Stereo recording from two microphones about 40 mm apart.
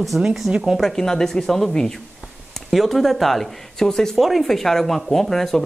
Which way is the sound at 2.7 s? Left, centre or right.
Centre.